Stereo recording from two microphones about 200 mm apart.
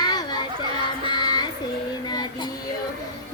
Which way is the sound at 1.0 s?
20° left (ahead or behind).